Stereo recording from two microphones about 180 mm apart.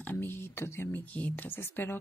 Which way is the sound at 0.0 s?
10° left (ahead or behind).